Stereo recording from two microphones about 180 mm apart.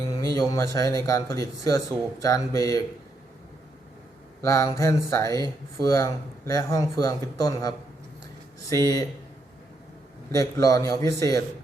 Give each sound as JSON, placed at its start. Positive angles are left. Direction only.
{"t": 0.3, "sound": "speech", "side_deg": 15}
{"t": 4.4, "sound": "speech", "side_deg": 15}
{"t": 8.7, "sound": "speech", "side_deg": 20}
{"t": 10.3, "sound": "speech", "side_deg": 20}